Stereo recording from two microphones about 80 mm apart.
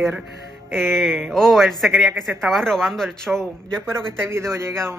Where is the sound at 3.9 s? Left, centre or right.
Right.